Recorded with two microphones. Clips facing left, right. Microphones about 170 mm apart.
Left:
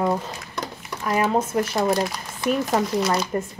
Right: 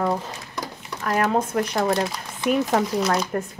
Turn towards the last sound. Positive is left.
turn(degrees=5)  # may be behind; listen again after turning